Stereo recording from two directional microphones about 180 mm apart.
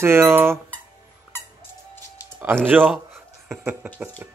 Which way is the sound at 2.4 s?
10° right (ahead or behind).